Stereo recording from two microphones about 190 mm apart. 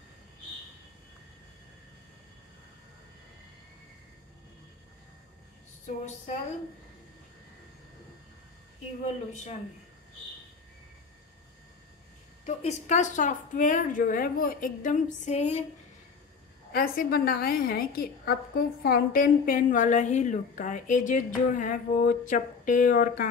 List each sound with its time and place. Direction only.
5.9 s a woman's voice: 40° left (ahead or behind)
9.0 s a woman's voice: 40° left (ahead or behind)
12.4 s a woman's voice: 40° left (ahead or behind)
16.7 s a woman's voice: 50° left (ahead or behind)